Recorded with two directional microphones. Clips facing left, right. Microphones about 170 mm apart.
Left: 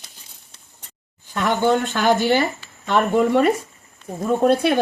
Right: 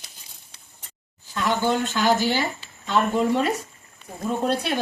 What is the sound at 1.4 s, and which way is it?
Speech, 55° left (ahead or behind).